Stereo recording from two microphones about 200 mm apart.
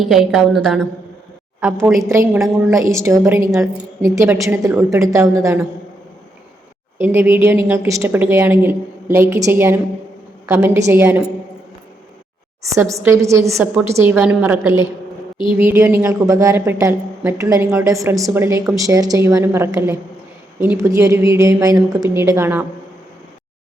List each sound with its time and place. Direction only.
0.0 s a woman's voice: centre (ahead or behind)
2.0 s a woman's voice: 15° right (ahead or behind)
7.0 s a woman's voice: 10° right (ahead or behind)
12.6 s a woman's voice: 15° right (ahead or behind)